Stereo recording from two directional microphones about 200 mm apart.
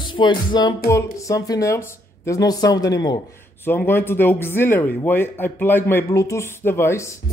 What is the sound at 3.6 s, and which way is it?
Speech, 10° left (ahead or behind).